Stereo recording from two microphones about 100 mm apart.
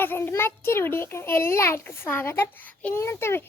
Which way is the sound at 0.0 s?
20° left (ahead or behind).